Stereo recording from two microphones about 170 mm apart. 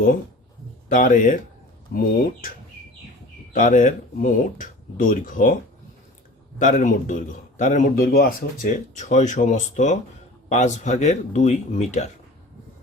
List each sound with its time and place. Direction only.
0.9 s a man's voice: 50° left (ahead or behind)
3.5 s a man's voice: 50° left (ahead or behind)
6.6 s a man's voice: 50° left (ahead or behind)